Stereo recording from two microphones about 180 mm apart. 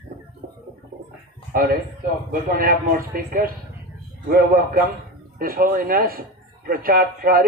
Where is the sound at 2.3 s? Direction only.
50° right (ahead or behind).